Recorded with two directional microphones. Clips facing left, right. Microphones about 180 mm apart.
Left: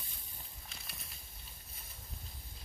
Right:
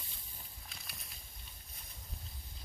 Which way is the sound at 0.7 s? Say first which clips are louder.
Left 1 dB; centre (ahead or behind).